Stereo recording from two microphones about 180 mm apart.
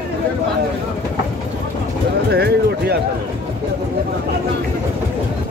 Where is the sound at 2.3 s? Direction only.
65° right (ahead or behind).